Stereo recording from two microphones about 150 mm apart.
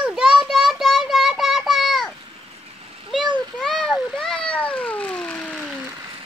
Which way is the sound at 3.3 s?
5° left (ahead or behind).